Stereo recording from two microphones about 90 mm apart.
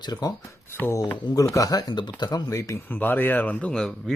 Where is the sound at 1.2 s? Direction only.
40° left (ahead or behind).